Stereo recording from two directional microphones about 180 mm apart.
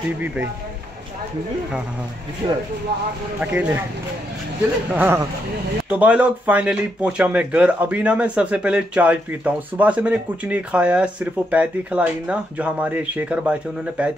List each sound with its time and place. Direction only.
3.3 s speech: 10° right (ahead or behind)
4.9 s speech: 10° right (ahead or behind)